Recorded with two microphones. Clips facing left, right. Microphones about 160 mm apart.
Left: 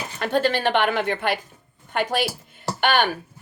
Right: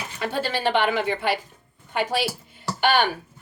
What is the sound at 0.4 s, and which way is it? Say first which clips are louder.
A woman's voice: right 1 dB; 55° left (ahead or behind).